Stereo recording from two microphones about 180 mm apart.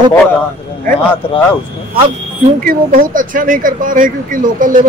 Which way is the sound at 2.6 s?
50° right (ahead or behind).